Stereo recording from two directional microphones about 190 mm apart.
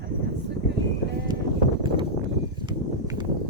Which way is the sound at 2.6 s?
20° right (ahead or behind).